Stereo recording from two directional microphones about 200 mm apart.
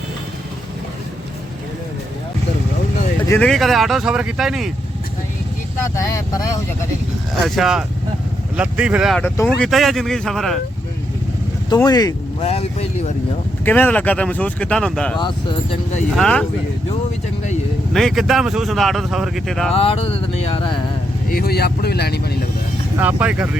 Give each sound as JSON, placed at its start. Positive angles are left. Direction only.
{"t": 3.2, "sound": "speech", "side_deg": 10}
{"t": 6.0, "sound": "speech", "side_deg": 15}
{"t": 7.4, "sound": "speech", "side_deg": 0}
{"t": 11.9, "sound": "speech", "side_deg": 20}
{"t": 12.4, "sound": "speech", "side_deg": 30}
{"t": 13.7, "sound": "speech", "side_deg": 10}
{"t": 16.1, "sound": "speech", "side_deg": 5}
{"t": 17.9, "sound": "speech", "side_deg": 0}
{"t": 19.7, "sound": "speech", "side_deg": 30}
{"t": 21.2, "sound": "speech", "side_deg": 50}
{"t": 23.0, "sound": "speech", "side_deg": -10}